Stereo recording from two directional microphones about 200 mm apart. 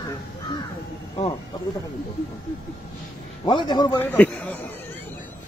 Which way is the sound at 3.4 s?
20° left (ahead or behind).